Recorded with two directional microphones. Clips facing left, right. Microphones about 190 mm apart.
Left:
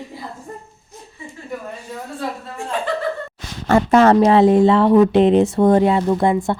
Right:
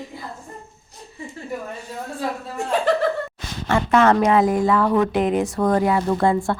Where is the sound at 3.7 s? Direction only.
35° left (ahead or behind).